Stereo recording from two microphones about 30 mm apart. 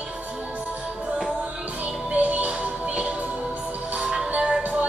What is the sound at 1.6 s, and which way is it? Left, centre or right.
Music, right.